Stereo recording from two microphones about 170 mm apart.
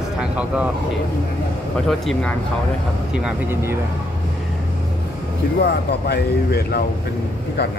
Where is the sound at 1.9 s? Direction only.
Centre (ahead or behind).